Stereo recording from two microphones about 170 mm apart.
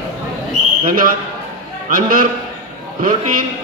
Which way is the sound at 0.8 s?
55° right (ahead or behind).